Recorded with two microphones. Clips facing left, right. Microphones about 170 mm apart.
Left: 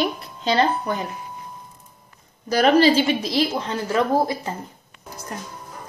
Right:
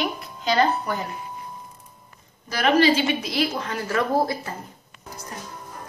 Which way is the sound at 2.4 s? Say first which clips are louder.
Left 3 dB; 35° left (ahead or behind).